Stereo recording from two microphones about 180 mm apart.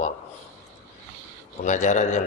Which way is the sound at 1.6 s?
40° left (ahead or behind).